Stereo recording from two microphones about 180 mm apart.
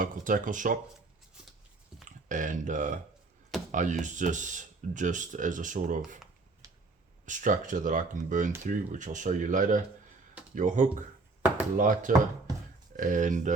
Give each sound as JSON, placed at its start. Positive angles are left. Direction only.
{"t": 0.0, "sound": "speech", "side_deg": -50}
{"t": 2.3, "sound": "speech", "side_deg": -45}
{"t": 6.6, "sound": "a sound", "side_deg": -20}
{"t": 7.3, "sound": "speech", "side_deg": -45}